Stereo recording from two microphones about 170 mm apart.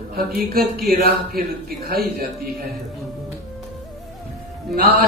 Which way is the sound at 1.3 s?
65° right (ahead or behind).